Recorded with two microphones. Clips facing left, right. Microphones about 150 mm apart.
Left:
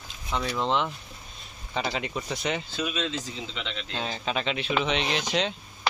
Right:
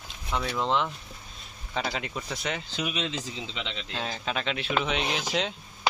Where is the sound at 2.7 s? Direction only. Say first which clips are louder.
Left 1 dB; 15° right (ahead or behind).